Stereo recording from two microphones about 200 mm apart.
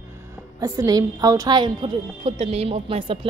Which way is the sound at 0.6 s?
20° right (ahead or behind).